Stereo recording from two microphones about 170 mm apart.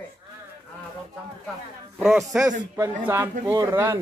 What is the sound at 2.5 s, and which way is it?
Speech, 15° right (ahead or behind).